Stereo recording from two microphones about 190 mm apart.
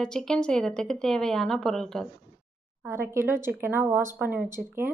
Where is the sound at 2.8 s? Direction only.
15° right (ahead or behind).